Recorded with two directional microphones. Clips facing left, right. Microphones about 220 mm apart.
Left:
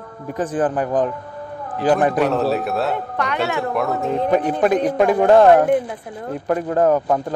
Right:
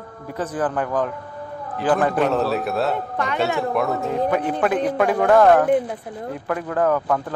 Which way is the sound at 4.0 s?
20° left (ahead or behind).